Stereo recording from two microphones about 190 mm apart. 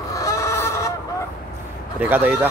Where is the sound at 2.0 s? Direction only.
10° right (ahead or behind).